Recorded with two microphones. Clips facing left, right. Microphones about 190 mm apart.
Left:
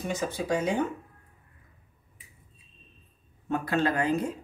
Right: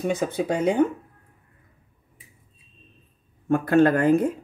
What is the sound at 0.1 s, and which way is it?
Speech, 55° right (ahead or behind).